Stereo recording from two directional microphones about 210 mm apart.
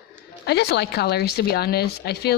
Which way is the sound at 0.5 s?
55° left (ahead or behind).